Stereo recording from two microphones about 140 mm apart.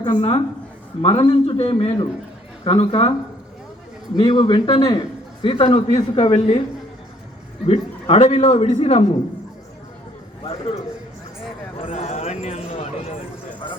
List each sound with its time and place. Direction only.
0.0 s a man's voice: 35° left (ahead or behind)
4.2 s a man's voice: 35° left (ahead or behind)
7.7 s a man's voice: 45° left (ahead or behind)
11.9 s a sound: 55° left (ahead or behind)